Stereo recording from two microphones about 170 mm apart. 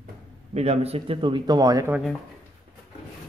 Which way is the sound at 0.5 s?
40° right (ahead or behind).